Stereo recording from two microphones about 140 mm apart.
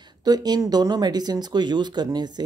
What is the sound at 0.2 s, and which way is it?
Speech, 30° right (ahead or behind).